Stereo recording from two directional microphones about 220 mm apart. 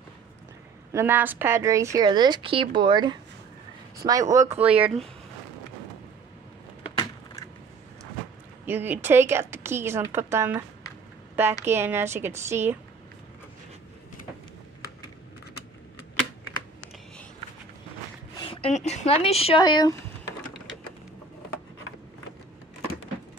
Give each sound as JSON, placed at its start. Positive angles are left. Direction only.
{"t": 0.9, "sound": "a woman's voice", "side_deg": -10}
{"t": 8.6, "sound": "a woman's voice", "side_deg": -10}
{"t": 11.6, "sound": "a woman's voice", "side_deg": -10}
{"t": 18.3, "sound": "speech", "side_deg": 20}